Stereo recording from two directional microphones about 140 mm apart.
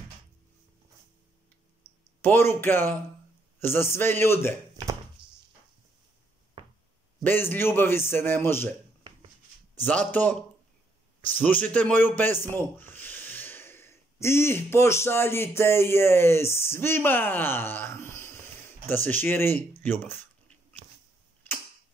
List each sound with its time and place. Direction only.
2.2 s a man's voice: 15° left (ahead or behind)
6.6 s knock: 40° right (ahead or behind)
7.2 s a man's voice: 15° left (ahead or behind)
9.8 s a man's voice: 10° left (ahead or behind)
11.4 s a man's voice: 10° left (ahead or behind)
19.8 s a sound: 15° left (ahead or behind)